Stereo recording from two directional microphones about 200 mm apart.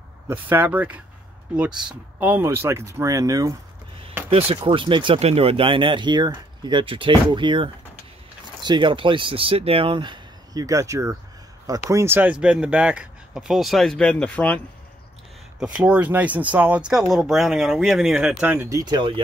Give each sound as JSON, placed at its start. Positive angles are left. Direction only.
{"t": 0.3, "sound": "speech", "side_deg": -10}
{"t": 4.3, "sound": "speech", "side_deg": -30}
{"t": 15.6, "sound": "speech", "side_deg": -5}